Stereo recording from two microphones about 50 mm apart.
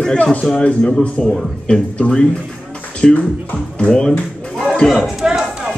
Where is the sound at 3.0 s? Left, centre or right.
Centre.